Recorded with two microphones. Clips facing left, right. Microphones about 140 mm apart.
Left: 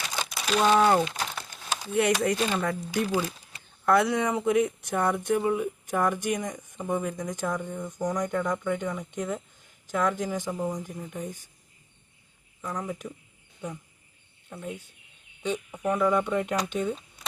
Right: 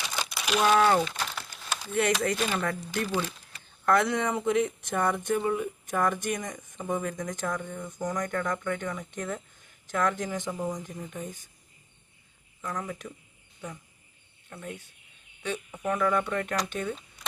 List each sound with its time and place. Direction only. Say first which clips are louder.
0.4 s speech: left 1 dB; 5° right (ahead or behind); by 1.4 s 15° left (ahead or behind)
1.4 s a sound: left 1 dB; centre (ahead or behind)
1.9 s speech: left 2 dB; 10° left (ahead or behind)
12.6 s speech: left 2 dB; 10° left (ahead or behind)
14.5 s speech: left 3 dB; 10° left (ahead or behind)